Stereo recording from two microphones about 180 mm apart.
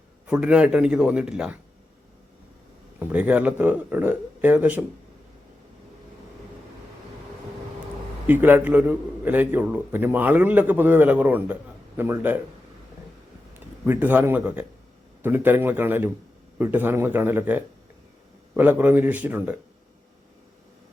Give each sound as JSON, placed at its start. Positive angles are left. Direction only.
{"t": 0.3, "sound": "a man's voice", "side_deg": -5}
{"t": 3.0, "sound": "a man's voice", "side_deg": -10}
{"t": 8.3, "sound": "a man's voice", "side_deg": -10}
{"t": 13.8, "sound": "a man's voice", "side_deg": -10}